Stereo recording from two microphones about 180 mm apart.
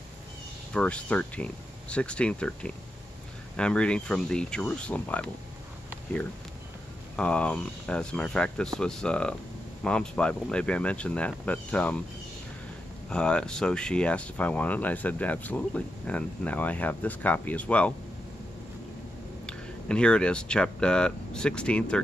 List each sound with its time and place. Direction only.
0.7 s speech: 5° left (ahead or behind)
7.2 s speech: 5° left (ahead or behind)
13.1 s speech: 5° left (ahead or behind)
19.4 s speech: 5° left (ahead or behind)